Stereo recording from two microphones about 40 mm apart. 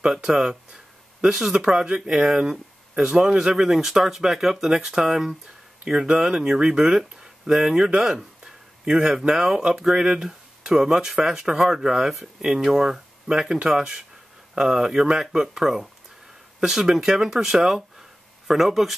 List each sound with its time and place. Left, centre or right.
0.1 s speech: centre
6.9 s speech: centre